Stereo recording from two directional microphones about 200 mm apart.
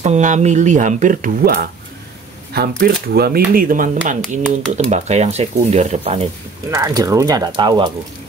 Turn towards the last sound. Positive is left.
turn(degrees=-25)  # may be behind; listen again after turning